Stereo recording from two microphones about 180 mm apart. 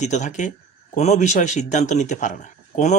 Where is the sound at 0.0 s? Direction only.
40° left (ahead or behind).